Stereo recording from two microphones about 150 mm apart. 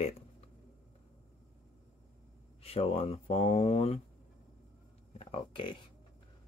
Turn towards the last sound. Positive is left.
turn(degrees=35)  # may be behind; listen again after turning